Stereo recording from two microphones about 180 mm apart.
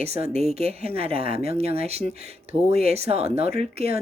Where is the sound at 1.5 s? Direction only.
35° right (ahead or behind).